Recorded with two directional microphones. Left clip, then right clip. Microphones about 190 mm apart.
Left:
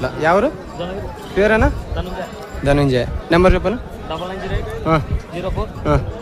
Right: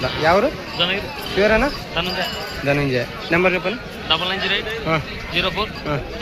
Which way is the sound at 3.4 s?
45° left (ahead or behind).